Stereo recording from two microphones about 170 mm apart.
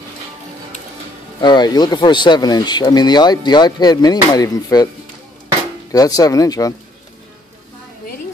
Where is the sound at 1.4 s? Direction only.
25° left (ahead or behind).